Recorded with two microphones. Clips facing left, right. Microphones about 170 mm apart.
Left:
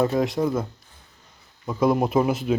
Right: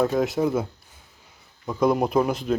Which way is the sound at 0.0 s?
Centre (ahead or behind).